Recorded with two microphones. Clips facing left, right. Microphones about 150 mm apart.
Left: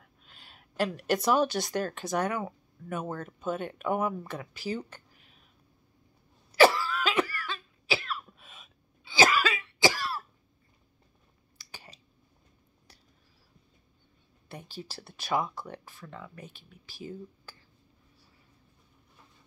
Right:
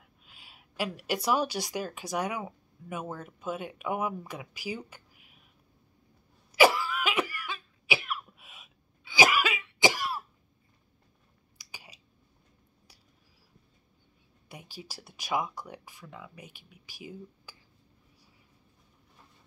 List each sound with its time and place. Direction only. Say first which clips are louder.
0.2 s a woman's voice: left 1 dB; 5° right (ahead or behind)
6.5 s cough: left 1 dB; 10° right (ahead or behind)
11.5 s a sound: left 2 dB; 10° right (ahead or behind)
14.5 s speech: left 3 dB; 10° right (ahead or behind)